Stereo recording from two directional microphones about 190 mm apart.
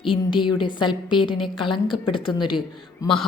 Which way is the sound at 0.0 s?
25° left (ahead or behind).